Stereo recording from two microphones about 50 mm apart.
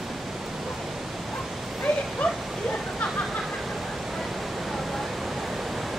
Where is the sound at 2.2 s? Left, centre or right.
Left.